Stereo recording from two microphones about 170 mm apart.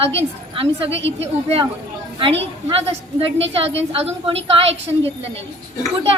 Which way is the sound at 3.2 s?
35° right (ahead or behind).